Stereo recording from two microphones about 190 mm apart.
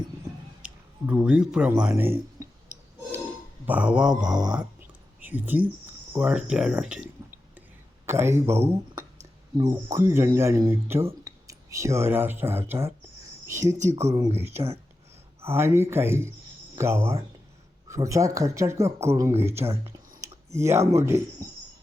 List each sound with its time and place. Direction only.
0.6 s speech: 10° right (ahead or behind)
3.7 s mantra: 5° right (ahead or behind)
4.5 s a sound: 10° right (ahead or behind)
8.0 s speech: 15° right (ahead or behind)
13.7 s speech: 35° right (ahead or behind)
14.1 s speech: 20° right (ahead or behind)